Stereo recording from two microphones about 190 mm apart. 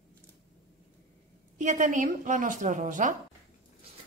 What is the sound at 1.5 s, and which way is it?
A woman's voice, 40° right (ahead or behind).